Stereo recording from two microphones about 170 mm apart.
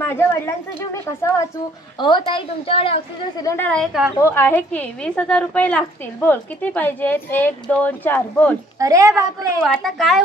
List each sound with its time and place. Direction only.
0.0 s a woman's voice: 15° left (ahead or behind)
2.0 s a woman's voice: 25° left (ahead or behind)
3.4 s a woman's voice: 10° left (ahead or behind)
4.2 s a woman's voice: 15° left (ahead or behind)
8.7 s a woman's voice: 20° right (ahead or behind)
9.8 s a woman's voice: centre (ahead or behind)